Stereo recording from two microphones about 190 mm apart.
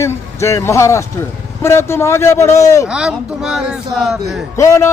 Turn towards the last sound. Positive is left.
turn(degrees=15)  # may be behind; listen again after turning